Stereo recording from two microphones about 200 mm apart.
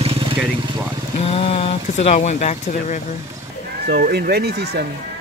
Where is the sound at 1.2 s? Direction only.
30° left (ahead or behind).